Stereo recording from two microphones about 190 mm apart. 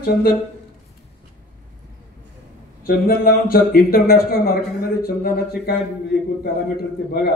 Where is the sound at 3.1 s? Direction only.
50° left (ahead or behind).